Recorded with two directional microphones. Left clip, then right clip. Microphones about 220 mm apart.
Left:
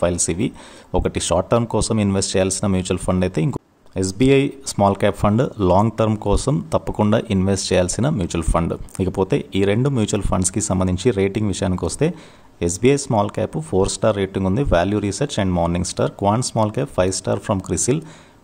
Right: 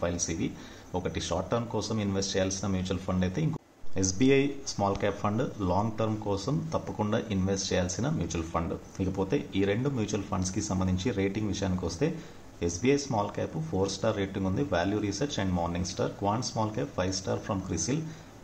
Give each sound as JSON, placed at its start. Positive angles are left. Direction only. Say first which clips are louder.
{"t": 0.0, "sound": "speech", "louder": "left 11 dB", "side_deg": 45}